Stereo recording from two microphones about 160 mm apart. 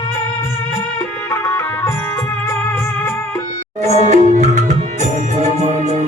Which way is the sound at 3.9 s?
45° right (ahead or behind).